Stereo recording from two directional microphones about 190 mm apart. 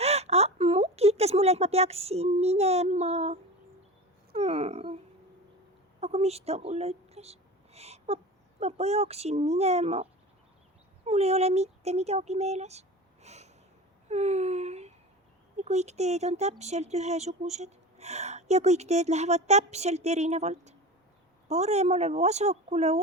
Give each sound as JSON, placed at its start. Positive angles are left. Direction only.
{"t": 0.0, "sound": "a sound", "side_deg": -35}
{"t": 4.4, "sound": "speech", "side_deg": -35}
{"t": 6.0, "sound": "speech", "side_deg": -35}
{"t": 13.2, "sound": "snort", "side_deg": -35}
{"t": 14.1, "sound": "speech", "side_deg": -35}